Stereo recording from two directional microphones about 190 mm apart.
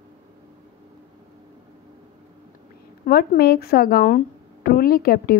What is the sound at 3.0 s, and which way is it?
Speech, 55° left (ahead or behind).